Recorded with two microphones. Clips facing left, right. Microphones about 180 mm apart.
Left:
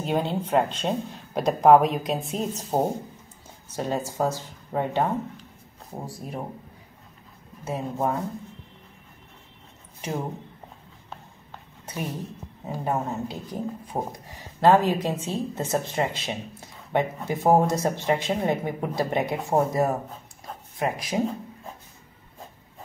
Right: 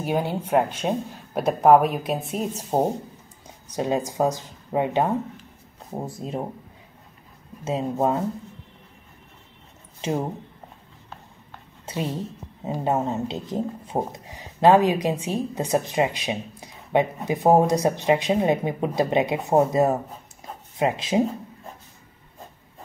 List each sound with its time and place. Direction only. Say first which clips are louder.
0.0 s speech: right 1 dB; 10° right (ahead or behind)
7.6 s speech: right 4 dB; 25° right (ahead or behind)
10.0 s speech: right 5 dB; 25° right (ahead or behind)
11.8 s a sound: right 4 dB; 25° right (ahead or behind)
12.6 s speech: right 4 dB; 25° right (ahead or behind)